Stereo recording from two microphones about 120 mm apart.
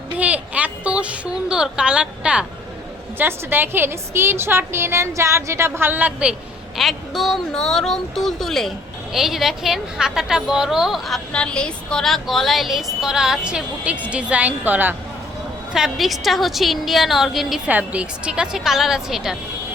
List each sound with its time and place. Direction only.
0.2 s a woman's voice: 10° right (ahead or behind)
6.7 s a woman's voice: centre (ahead or behind); by 14.9 s 15° right (ahead or behind)
15.7 s a woman's voice: centre (ahead or behind)